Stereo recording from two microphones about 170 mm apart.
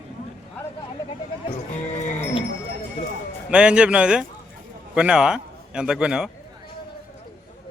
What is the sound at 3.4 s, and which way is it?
A man's voice, 5° right (ahead or behind).